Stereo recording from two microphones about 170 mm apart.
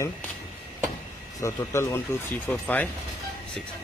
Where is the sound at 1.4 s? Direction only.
15° left (ahead or behind).